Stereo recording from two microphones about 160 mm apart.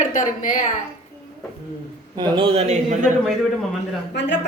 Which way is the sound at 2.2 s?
35° right (ahead or behind).